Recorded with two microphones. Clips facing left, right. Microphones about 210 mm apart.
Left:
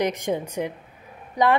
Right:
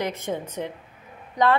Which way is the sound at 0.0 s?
15° left (ahead or behind).